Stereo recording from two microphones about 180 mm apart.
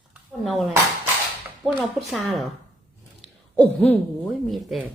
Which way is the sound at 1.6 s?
Centre (ahead or behind).